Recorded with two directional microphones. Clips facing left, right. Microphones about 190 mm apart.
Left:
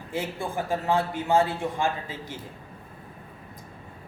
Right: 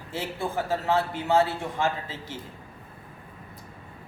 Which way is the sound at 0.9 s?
15° left (ahead or behind).